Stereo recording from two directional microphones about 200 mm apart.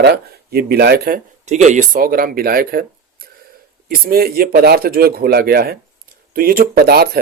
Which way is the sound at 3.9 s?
50° right (ahead or behind).